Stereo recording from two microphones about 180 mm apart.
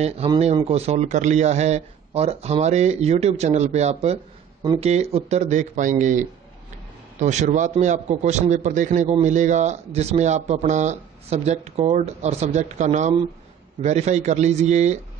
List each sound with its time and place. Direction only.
0.7 s speech: 35° right (ahead or behind)